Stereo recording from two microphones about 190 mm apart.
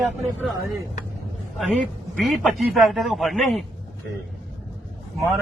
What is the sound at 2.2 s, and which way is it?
A man's voice, centre (ahead or behind).